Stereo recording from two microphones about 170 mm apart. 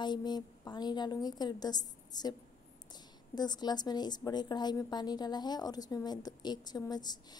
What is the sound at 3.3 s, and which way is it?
A woman's voice, 25° left (ahead or behind).